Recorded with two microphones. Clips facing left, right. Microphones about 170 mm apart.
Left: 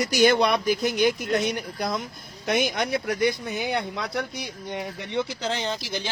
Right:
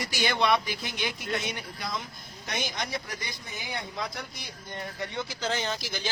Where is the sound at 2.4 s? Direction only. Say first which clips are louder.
Left 10 dB; 55° left (ahead or behind).